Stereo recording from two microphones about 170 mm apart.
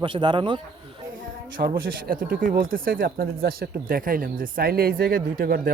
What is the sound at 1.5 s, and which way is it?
Speech, 55° right (ahead or behind).